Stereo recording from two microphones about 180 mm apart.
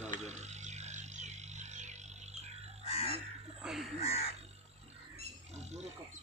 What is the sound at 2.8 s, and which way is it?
Crow, 35° left (ahead or behind).